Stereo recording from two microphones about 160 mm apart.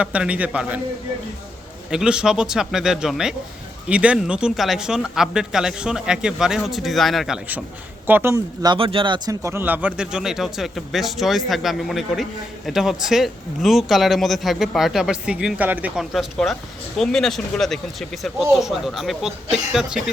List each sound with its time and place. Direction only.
0.0 s a man's voice: 10° right (ahead or behind)
1.9 s speech: 5° right (ahead or behind)
8.0 s a man's voice: 15° right (ahead or behind)
8.7 s speech: 35° right (ahead or behind); by 20.0 s 5° right (ahead or behind)